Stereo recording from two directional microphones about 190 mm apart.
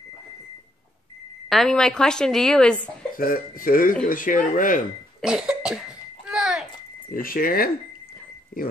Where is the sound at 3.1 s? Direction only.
50° left (ahead or behind).